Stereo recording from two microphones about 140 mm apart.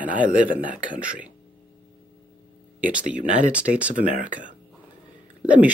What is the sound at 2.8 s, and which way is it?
Speech, 10° right (ahead or behind).